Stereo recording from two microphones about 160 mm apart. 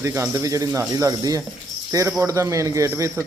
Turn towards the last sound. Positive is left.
turn(degrees=-20)  # may be behind; listen again after turning